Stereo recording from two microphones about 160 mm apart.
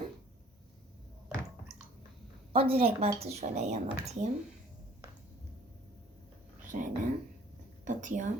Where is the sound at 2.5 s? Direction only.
35° right (ahead or behind).